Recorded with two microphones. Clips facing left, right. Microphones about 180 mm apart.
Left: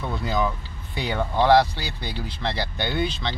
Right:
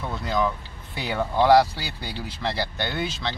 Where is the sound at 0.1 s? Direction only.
Centre (ahead or behind).